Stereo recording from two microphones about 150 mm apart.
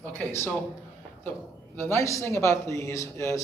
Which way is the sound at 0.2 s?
15° left (ahead or behind).